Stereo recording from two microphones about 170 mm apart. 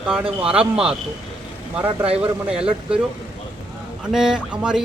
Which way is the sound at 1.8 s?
35° right (ahead or behind).